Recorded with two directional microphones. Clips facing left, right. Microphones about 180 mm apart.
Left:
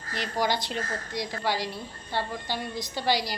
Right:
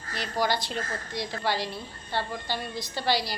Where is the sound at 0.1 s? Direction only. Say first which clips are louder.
Even; 15° left (ahead or behind).